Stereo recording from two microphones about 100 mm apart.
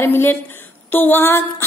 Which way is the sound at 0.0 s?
20° left (ahead or behind).